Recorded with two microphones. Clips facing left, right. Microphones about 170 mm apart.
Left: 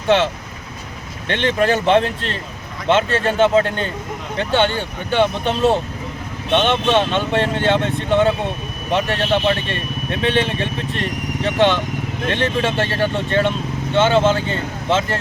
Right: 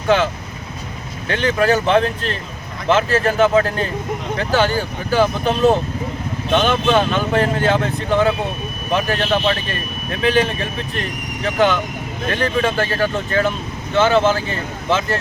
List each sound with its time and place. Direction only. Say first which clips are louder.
1.3 s speech: right 1 dB; 30° left (ahead or behind)
8.9 s speech: even; 30° left (ahead or behind)